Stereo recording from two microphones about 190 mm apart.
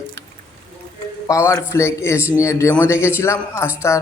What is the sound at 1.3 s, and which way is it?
Speech, 15° left (ahead or behind).